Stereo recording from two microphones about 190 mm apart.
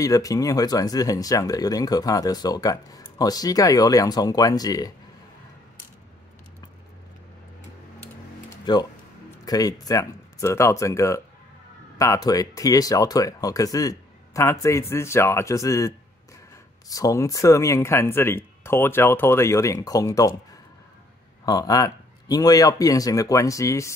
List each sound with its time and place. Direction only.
0.0 s speech: 20° left (ahead or behind)
8.5 s a sound: 20° left (ahead or behind)
9.4 s speech: 20° left (ahead or behind)
16.9 s speech: 15° left (ahead or behind)
21.5 s speech: 20° left (ahead or behind)